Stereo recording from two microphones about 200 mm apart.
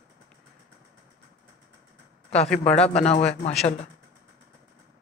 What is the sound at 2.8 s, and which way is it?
Speech, 30° left (ahead or behind).